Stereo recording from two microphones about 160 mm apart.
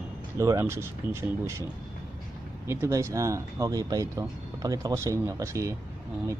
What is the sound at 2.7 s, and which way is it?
Speech, 15° right (ahead or behind).